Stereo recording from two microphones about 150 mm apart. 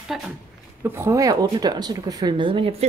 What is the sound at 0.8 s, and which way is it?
A woman's voice, 15° right (ahead or behind).